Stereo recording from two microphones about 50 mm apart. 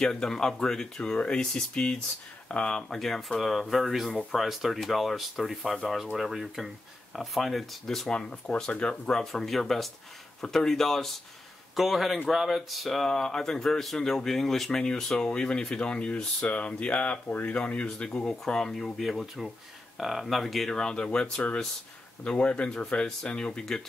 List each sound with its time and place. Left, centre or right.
0.0 s speech: centre
3.0 s speech: centre; by 9.1 s left
9.3 s speech: centre; by 17.2 s left
17.3 s speech: left
17.6 s speech: left; by 20.7 s centre
20.7 s speech: centre